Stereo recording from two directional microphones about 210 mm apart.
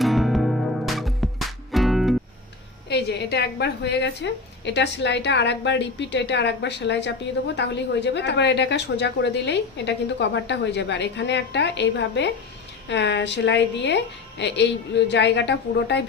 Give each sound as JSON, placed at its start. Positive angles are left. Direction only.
{"t": 0.0, "sound": "music", "side_deg": 0}
{"t": 2.9, "sound": "a woman's voice", "side_deg": 50}